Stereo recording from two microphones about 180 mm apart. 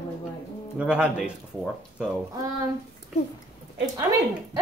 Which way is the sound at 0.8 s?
5° right (ahead or behind).